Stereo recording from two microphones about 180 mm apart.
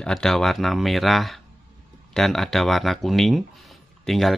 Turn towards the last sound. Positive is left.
turn(degrees=0)  # may be behind; listen again after turning